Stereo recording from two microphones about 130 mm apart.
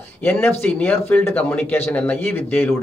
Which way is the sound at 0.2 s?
15° left (ahead or behind).